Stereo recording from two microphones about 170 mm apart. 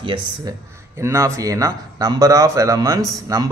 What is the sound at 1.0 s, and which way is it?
A man's voice, 15° right (ahead or behind).